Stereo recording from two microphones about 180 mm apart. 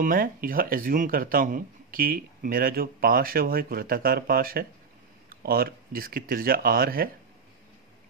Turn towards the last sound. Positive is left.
turn(degrees=-55)  # may be behind; listen again after turning